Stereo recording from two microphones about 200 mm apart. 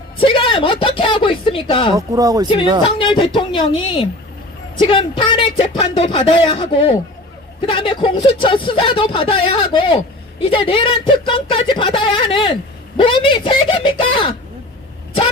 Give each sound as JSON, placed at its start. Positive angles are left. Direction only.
{"t": 0.2, "sound": "speech", "side_deg": 25}
{"t": 2.0, "sound": "speech", "side_deg": -15}
{"t": 2.8, "sound": "speech", "side_deg": 25}